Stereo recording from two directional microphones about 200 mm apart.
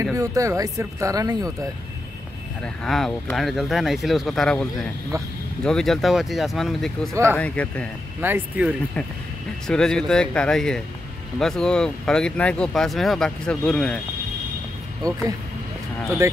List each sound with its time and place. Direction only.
0.0 s speech: 15° right (ahead or behind)
2.6 s speech: 5° left (ahead or behind)
8.2 s speech: 10° right (ahead or behind)
9.7 s speech: 5° left (ahead or behind)
15.0 s speech: 15° right (ahead or behind)